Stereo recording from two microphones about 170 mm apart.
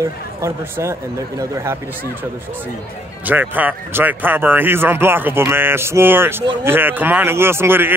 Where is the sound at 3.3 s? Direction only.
10° right (ahead or behind).